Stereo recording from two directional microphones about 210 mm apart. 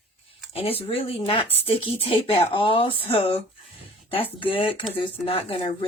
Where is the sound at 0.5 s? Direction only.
25° left (ahead or behind).